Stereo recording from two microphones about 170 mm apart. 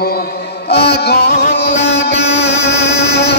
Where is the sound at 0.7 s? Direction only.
70° left (ahead or behind).